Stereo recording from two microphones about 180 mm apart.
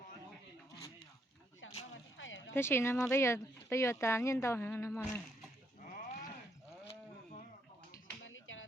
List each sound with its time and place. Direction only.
1.6 s a sound: 90° left
2.6 s speech: 15° left (ahead or behind)
8.2 s finger snapping: 90° left